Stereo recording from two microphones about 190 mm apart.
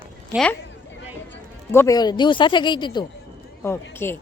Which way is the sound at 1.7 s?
15° left (ahead or behind).